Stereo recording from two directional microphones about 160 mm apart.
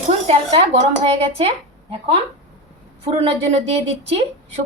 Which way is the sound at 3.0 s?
40° right (ahead or behind).